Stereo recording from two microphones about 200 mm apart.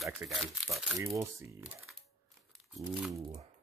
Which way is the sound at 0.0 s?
Centre (ahead or behind).